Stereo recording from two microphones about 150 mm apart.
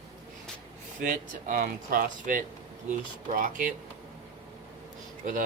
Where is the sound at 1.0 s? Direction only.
60° right (ahead or behind).